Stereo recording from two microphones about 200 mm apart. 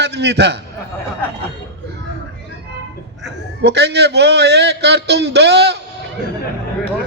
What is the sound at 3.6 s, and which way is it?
A man's voice, 60° right (ahead or behind).